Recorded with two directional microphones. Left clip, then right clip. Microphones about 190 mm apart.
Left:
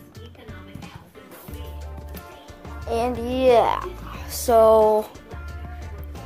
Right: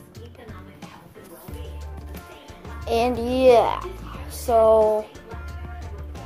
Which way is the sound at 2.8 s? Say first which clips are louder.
Right 2 dB; 15° right (ahead or behind).